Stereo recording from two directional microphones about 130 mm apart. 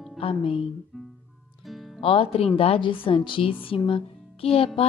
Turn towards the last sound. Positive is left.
turn(degrees=50)  # may be behind; listen again after turning